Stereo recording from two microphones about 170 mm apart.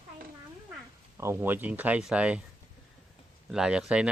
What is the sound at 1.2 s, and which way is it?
Speech, 15° right (ahead or behind).